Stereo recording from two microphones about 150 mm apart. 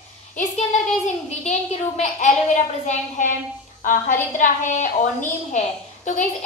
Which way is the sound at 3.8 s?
65° left (ahead or behind).